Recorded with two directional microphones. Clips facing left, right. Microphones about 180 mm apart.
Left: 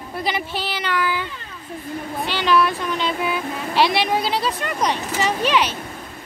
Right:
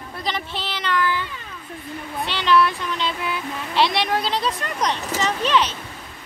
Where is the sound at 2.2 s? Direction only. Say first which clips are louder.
Even; 5° left (ahead or behind).